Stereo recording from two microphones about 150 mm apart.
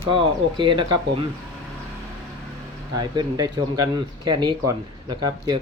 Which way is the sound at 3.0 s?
25° right (ahead or behind).